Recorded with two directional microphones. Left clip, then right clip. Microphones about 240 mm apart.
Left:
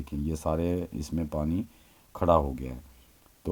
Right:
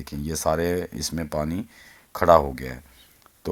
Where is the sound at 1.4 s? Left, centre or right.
Right.